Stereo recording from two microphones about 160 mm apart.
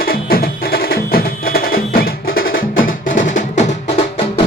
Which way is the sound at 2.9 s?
55° left (ahead or behind).